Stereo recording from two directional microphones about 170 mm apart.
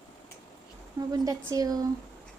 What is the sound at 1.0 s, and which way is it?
Speech, 20° right (ahead or behind).